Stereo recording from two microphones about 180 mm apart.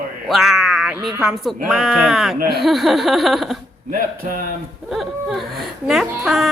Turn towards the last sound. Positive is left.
turn(degrees=0)  # may be behind; listen again after turning